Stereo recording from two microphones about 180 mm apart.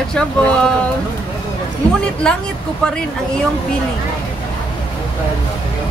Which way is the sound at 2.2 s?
5° left (ahead or behind).